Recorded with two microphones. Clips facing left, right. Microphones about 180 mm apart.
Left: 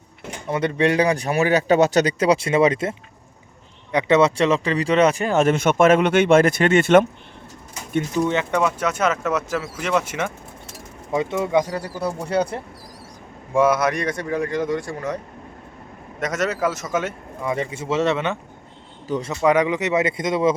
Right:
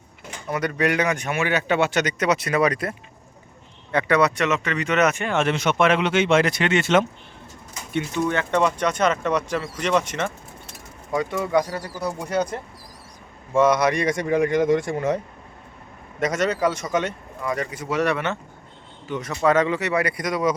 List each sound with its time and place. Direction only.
0.4 s speech: 25° left (ahead or behind)
3.9 s speech: 25° left (ahead or behind); by 7.0 s 50° left (ahead or behind)
8.4 s speech: 5° left (ahead or behind)
11.1 s speech: 25° left (ahead or behind)
13.5 s speech: 10° left (ahead or behind)
14.1 s speech: 20° right (ahead or behind)
16.2 s speech: centre (ahead or behind)
17.4 s speech: 25° left (ahead or behind)
19.0 s a man's voice: 35° left (ahead or behind)
19.3 s speech: 15° left (ahead or behind)